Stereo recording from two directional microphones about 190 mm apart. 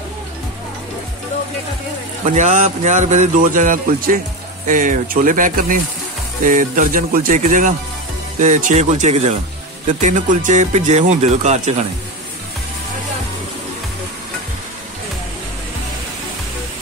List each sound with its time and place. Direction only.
2.2 s speech: 40° right (ahead or behind)